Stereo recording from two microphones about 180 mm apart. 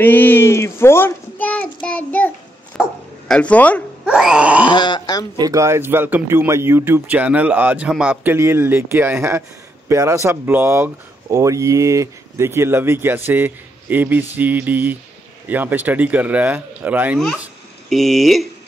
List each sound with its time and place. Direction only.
0.0 s a child's voice: 10° left (ahead or behind)
4.0 s groan: 5° right (ahead or behind)
4.6 s speech: 25° left (ahead or behind)
5.4 s speech: 15° right (ahead or behind); by 18.5 s centre (ahead or behind)